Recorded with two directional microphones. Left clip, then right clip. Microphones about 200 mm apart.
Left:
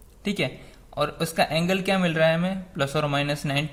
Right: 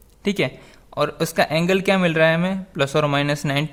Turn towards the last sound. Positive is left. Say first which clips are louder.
# right 4 dB
turn(degrees=-45)  # may be behind; listen again after turning